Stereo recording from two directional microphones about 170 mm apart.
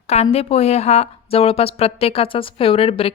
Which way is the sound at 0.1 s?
40° left (ahead or behind).